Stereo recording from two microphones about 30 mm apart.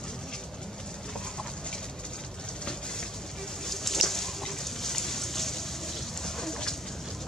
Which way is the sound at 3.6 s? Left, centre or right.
Centre.